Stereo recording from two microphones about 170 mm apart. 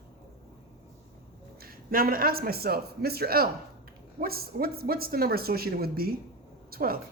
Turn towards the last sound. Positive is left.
turn(degrees=-60)  # may be behind; listen again after turning